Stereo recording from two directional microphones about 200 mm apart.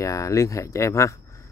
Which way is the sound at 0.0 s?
15° left (ahead or behind).